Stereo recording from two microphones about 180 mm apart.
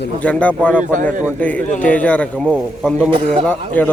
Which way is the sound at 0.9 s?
45° right (ahead or behind).